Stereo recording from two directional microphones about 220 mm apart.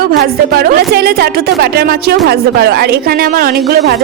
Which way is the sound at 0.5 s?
45° right (ahead or behind).